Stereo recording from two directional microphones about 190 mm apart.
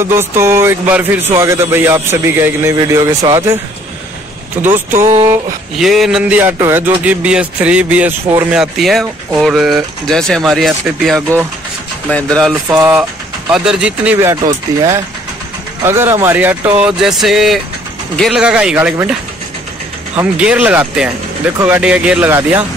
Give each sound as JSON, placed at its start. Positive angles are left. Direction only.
{"t": 0.0, "sound": "speech", "side_deg": -15}
{"t": 4.6, "sound": "speech", "side_deg": -10}
{"t": 5.8, "sound": "a man's voice", "side_deg": 0}
{"t": 12.6, "sound": "a man's voice", "side_deg": -10}
{"t": 14.3, "sound": "a man's voice", "side_deg": -20}
{"t": 20.3, "sound": "speech", "side_deg": -5}